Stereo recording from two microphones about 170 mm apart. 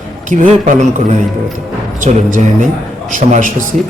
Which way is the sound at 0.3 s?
50° right (ahead or behind).